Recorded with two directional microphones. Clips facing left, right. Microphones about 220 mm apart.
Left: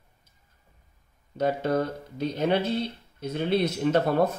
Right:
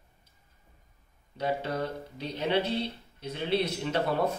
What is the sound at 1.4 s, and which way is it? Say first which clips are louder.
Speech: left 6 dB; 45° left (ahead or behind).